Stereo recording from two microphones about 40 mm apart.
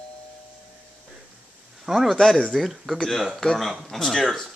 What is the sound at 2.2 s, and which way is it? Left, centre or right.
Speech, centre.